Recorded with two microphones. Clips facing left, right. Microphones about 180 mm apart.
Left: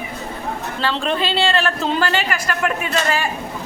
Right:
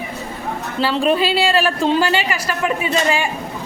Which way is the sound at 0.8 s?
10° right (ahead or behind).